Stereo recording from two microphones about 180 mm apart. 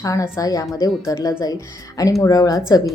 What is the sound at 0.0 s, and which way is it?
A woman's voice, 20° left (ahead or behind).